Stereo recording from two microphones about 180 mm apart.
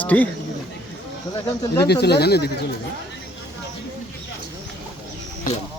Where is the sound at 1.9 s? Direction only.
65° left (ahead or behind).